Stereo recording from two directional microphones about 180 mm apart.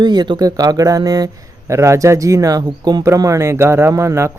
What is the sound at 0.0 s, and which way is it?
Speech, 25° right (ahead or behind).